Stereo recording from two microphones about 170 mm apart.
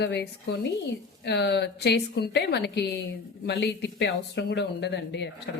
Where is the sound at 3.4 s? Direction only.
70° left (ahead or behind).